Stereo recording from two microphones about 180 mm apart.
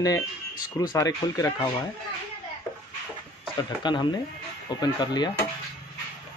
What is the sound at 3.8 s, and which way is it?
Speech, 25° left (ahead or behind).